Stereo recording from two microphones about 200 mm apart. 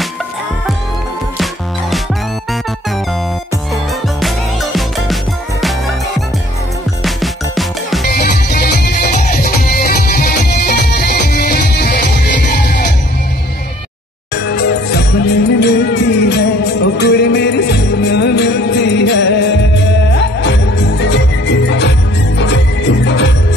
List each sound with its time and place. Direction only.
4.7 s music: centre (ahead or behind)
7.0 s music: centre (ahead or behind)
8.1 s music: 50° left (ahead or behind)
11.1 s music: 50° left (ahead or behind)
14.3 s music: 55° left (ahead or behind)
20.4 s music: 60° left (ahead or behind)